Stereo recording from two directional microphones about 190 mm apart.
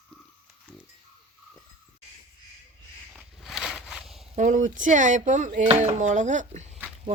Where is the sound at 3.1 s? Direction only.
Centre (ahead or behind).